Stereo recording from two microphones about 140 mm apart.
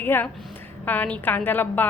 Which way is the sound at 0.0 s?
15° left (ahead or behind).